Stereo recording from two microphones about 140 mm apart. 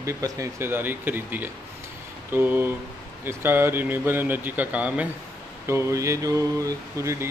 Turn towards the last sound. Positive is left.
turn(degrees=-20)  # may be behind; listen again after turning